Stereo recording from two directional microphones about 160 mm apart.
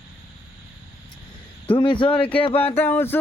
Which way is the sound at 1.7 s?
30° left (ahead or behind).